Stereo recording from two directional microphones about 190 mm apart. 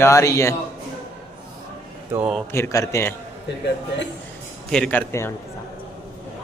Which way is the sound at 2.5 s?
15° left (ahead or behind).